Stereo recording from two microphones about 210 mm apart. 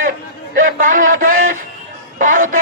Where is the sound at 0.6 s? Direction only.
40° right (ahead or behind).